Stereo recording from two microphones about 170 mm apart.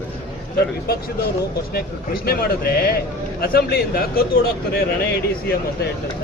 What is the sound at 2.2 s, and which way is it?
Speech, 65° left (ahead or behind).